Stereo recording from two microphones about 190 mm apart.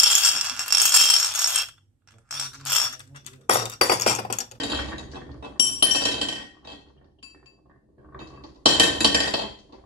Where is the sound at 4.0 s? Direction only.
35° left (ahead or behind).